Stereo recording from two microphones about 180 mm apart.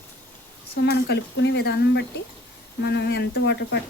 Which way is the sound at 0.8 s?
70° left (ahead or behind).